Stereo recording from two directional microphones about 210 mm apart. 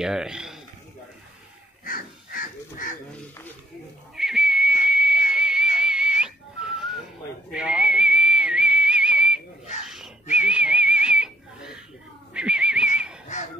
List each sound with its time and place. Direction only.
0.0 s a man's voice: 5° right (ahead or behind)
1.9 s crow: 40° left (ahead or behind)
4.1 s whistle: centre (ahead or behind)
7.5 s whistling: 5° right (ahead or behind)
12.4 s a sound: 5° right (ahead or behind)
13.3 s a sound: 35° left (ahead or behind)